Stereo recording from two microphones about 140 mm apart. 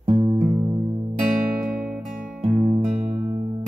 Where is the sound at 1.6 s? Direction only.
10° right (ahead or behind).